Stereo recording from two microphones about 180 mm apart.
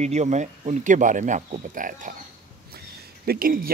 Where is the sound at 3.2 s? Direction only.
55° right (ahead or behind).